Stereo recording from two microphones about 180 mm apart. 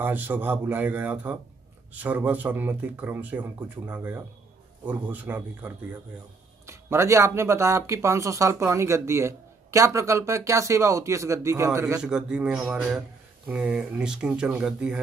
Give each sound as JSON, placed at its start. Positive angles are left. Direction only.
{"t": 0.0, "sound": "speech", "side_deg": -10}
{"t": 12.0, "sound": "speech", "side_deg": -5}